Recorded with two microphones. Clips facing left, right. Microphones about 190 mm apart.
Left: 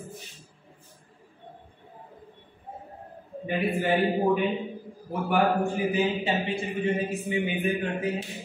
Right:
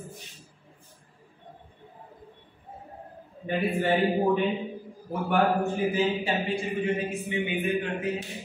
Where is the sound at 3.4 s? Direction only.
5° left (ahead or behind).